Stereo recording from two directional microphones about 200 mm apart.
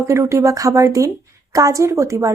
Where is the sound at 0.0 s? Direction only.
15° right (ahead or behind).